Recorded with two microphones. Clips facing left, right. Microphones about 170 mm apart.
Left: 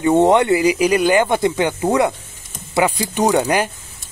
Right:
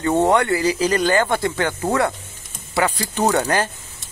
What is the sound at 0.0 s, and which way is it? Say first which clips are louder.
Speech: left 4 dB; 15° left (ahead or behind).